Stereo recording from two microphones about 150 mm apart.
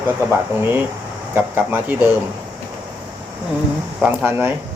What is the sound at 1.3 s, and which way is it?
Speech, 15° right (ahead or behind).